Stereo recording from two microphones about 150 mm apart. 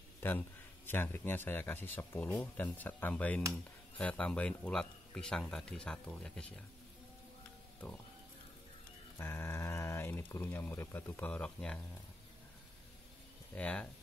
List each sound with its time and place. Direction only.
0.2 s speech: 15° left (ahead or behind)
9.2 s speech: 15° left (ahead or behind)
13.6 s speech: 10° left (ahead or behind)